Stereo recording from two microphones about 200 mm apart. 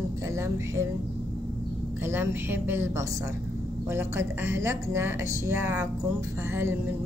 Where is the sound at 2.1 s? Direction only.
10° right (ahead or behind).